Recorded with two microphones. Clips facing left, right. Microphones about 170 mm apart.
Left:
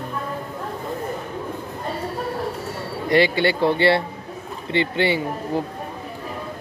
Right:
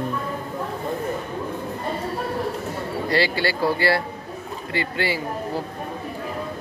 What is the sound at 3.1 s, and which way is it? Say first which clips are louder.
Speech: left 5 dB; 20° left (ahead or behind).